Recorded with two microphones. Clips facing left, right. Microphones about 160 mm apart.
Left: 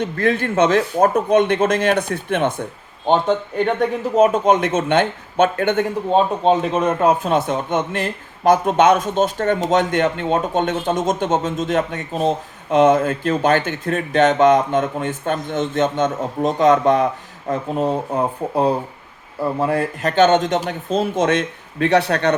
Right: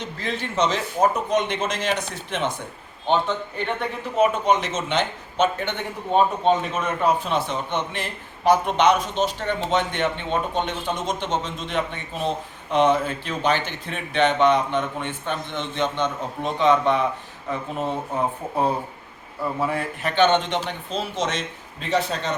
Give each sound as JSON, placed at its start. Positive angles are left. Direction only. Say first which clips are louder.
{"t": 0.0, "sound": "a man's voice", "louder": "left 10 dB", "side_deg": 55}
{"t": 6.1, "sound": "a man's voice", "louder": "left 2 dB", "side_deg": 35}
{"t": 19.5, "sound": "a man's voice", "louder": "left 6 dB", "side_deg": 45}